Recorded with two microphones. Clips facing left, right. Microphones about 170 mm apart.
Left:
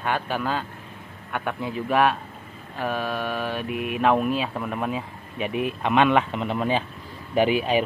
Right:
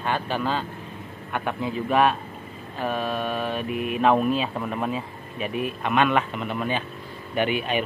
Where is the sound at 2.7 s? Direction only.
10° left (ahead or behind); by 6.8 s 30° left (ahead or behind).